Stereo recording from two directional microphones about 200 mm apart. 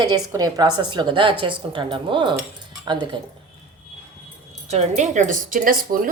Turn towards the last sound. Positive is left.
turn(degrees=-45)  # may be behind; listen again after turning